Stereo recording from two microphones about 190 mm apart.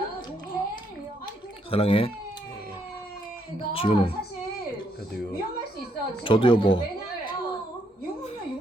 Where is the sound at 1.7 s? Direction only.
30° left (ahead or behind).